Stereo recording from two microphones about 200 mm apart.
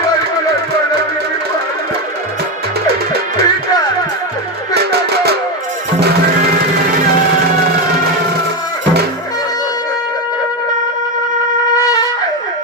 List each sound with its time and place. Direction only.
2.8 s music: 50° right (ahead or behind)
4.7 s music: 55° right (ahead or behind)